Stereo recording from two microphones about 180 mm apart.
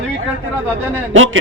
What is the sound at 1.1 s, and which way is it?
Speech, 90° right.